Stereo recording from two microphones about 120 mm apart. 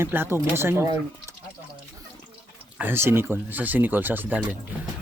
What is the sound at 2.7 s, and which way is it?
Speech, 20° right (ahead or behind).